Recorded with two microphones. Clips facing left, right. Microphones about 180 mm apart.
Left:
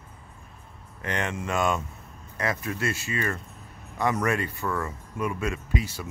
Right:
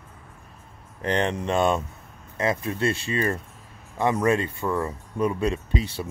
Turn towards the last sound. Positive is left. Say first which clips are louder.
# right 3 dB
turn(degrees=-30)  # may be behind; listen again after turning